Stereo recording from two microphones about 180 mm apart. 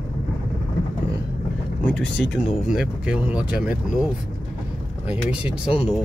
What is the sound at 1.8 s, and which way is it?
Speech, 5° left (ahead or behind).